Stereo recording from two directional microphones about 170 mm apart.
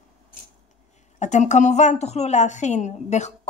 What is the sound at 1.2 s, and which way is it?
A woman's voice, 45° left (ahead or behind).